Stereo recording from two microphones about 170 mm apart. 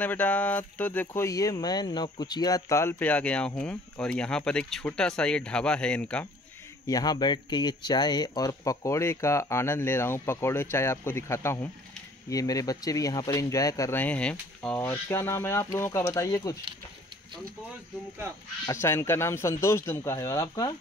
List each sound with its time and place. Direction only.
0.0 s speech: 10° left (ahead or behind)
6.9 s speech: 20° left (ahead or behind)
18.7 s speech: 15° left (ahead or behind)